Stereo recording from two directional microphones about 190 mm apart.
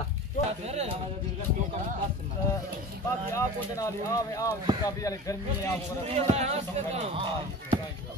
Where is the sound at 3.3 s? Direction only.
15° left (ahead or behind).